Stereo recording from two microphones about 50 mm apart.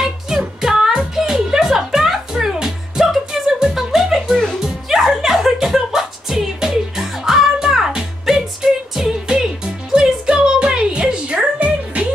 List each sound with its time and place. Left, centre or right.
0.0 s music: centre; by 12.1 s right